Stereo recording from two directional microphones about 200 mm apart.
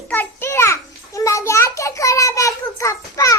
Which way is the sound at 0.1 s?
10° left (ahead or behind).